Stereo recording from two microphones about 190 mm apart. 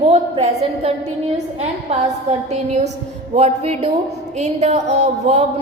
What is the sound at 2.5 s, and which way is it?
A woman's voice, 35° right (ahead or behind).